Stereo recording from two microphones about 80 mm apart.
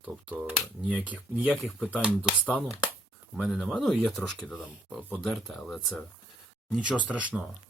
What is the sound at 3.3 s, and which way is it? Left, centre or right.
Speech, centre.